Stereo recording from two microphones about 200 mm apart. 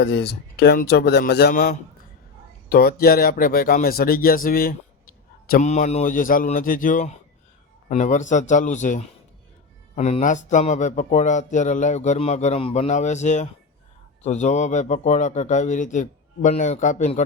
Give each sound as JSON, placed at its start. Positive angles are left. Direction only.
{"t": 0.0, "sound": "speech", "side_deg": 55}